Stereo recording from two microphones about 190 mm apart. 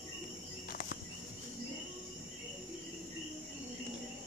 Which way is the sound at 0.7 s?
50° left (ahead or behind).